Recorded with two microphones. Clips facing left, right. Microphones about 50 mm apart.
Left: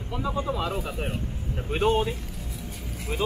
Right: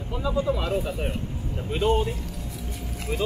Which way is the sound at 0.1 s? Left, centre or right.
Left.